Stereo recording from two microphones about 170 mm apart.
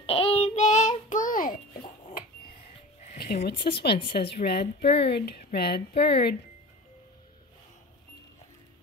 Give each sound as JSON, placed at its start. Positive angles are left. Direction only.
{"t": 0.0, "sound": "child singing", "side_deg": 35}
{"t": 3.1, "sound": "a sound", "side_deg": 65}
{"t": 3.4, "sound": "speech", "side_deg": 75}